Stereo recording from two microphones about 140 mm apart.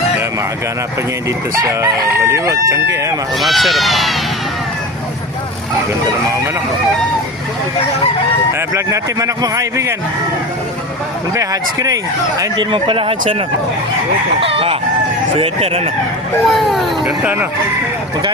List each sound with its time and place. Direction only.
1.5 s chicken: 20° right (ahead or behind)
3.4 s a child's voice: centre (ahead or behind)
8.7 s chicken: 25° right (ahead or behind)
11.3 s chicken: 25° right (ahead or behind)
12.4 s speech: 35° right (ahead or behind)
14.4 s speech: 40° right (ahead or behind)
16.5 s a child's voice: centre (ahead or behind)